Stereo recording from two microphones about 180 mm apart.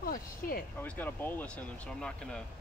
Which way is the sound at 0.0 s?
50° left (ahead or behind).